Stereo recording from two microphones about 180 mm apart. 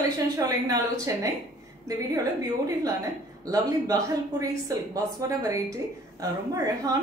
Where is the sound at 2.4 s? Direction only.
20° right (ahead or behind).